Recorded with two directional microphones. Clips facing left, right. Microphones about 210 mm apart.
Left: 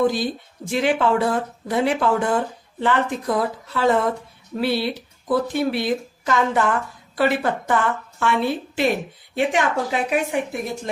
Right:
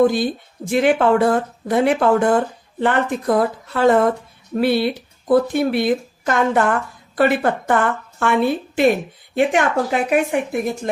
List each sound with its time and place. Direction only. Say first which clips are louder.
0.0 s speech: right 4 dB; 50° right (ahead or behind)